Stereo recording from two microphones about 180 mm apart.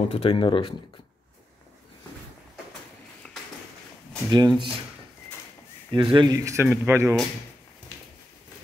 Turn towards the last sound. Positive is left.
turn(degrees=-15)  # may be behind; listen again after turning